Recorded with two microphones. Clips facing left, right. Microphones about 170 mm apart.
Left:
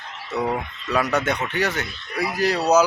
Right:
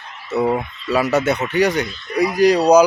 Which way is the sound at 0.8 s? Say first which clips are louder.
Right 5 dB; 5° right (ahead or behind).